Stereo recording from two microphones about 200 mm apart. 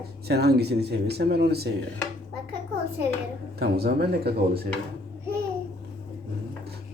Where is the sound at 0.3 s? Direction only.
55° right (ahead or behind).